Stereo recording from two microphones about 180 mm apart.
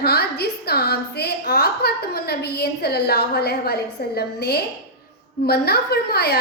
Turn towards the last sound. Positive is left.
turn(degrees=60)  # may be behind; listen again after turning